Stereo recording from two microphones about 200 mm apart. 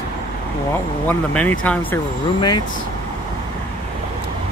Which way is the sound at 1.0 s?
5° left (ahead or behind).